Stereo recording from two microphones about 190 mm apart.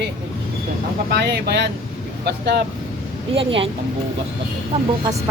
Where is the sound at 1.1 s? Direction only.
60° right (ahead or behind).